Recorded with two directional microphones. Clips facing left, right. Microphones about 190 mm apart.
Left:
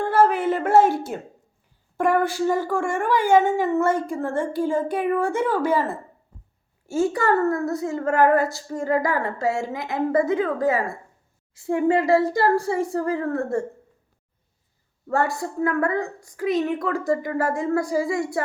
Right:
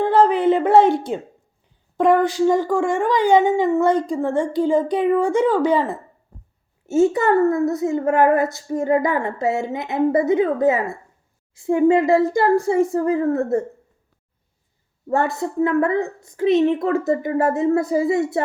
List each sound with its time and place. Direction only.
0.0 s a sound: 15° right (ahead or behind)
0.3 s a woman's voice: 20° right (ahead or behind)
0.8 s speech: 5° left (ahead or behind)
2.0 s speech: 15° right (ahead or behind)
6.8 s a woman's voice: 20° right (ahead or behind)
15.0 s a woman's voice: 20° right (ahead or behind)